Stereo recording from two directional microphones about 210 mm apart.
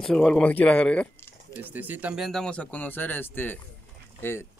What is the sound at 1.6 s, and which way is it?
Speech, 10° right (ahead or behind).